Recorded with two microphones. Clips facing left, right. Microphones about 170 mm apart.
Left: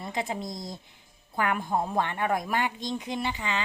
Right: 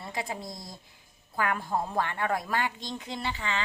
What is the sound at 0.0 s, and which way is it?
A woman's voice, 20° left (ahead or behind).